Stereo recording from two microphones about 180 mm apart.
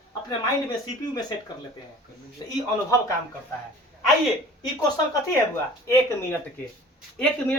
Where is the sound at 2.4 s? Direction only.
20° left (ahead or behind).